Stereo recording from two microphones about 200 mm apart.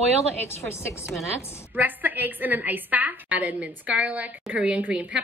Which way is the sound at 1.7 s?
10° right (ahead or behind).